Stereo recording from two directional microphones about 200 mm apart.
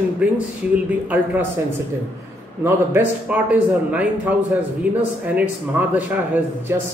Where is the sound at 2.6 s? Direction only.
10° right (ahead or behind).